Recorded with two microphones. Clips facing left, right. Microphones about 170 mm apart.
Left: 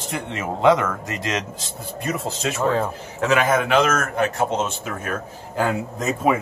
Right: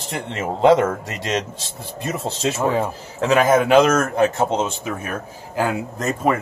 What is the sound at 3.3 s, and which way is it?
Speech, 40° right (ahead or behind).